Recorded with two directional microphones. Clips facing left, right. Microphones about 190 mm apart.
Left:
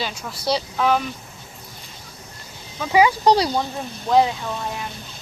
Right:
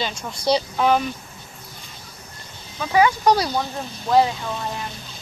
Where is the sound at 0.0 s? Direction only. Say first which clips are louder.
Right 2 dB; 5° left (ahead or behind).